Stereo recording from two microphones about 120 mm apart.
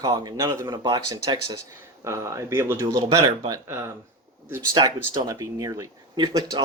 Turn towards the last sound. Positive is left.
turn(degrees=-35)  # may be behind; listen again after turning